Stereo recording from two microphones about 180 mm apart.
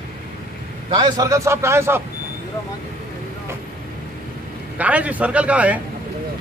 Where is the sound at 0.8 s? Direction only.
25° right (ahead or behind).